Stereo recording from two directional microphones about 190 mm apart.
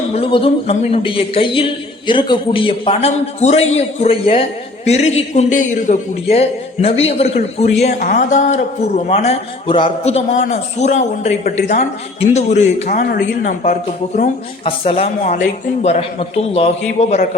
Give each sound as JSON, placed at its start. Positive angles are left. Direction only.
{"t": 0.1, "sound": "a man's voice", "side_deg": 30}
{"t": 14.6, "sound": "a man's voice", "side_deg": 30}